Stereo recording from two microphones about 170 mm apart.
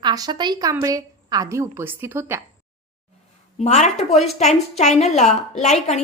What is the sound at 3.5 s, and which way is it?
A woman's voice, 45° left (ahead or behind).